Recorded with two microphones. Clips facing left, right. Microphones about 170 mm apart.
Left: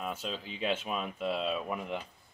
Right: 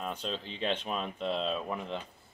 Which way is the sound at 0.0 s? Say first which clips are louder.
Right 1 dB; 5° left (ahead or behind).